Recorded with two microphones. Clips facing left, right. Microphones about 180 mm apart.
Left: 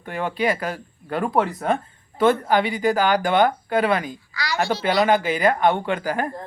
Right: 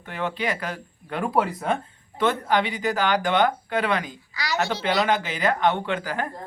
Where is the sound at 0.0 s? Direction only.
50° left (ahead or behind).